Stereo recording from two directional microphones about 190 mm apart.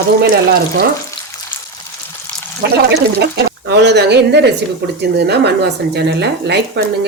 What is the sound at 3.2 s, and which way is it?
Speech, 60° right (ahead or behind).